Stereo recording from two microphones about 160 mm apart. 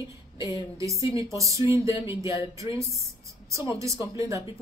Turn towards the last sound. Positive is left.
turn(degrees=-20)  # may be behind; listen again after turning